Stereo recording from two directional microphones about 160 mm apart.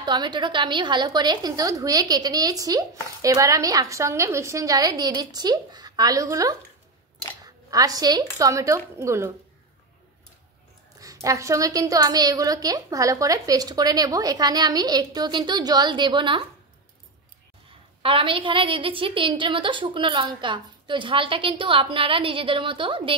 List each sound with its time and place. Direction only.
0.0 s a woman's voice: 25° right (ahead or behind)
11.0 s a woman's voice: 20° right (ahead or behind)
18.0 s a woman's voice: 35° right (ahead or behind)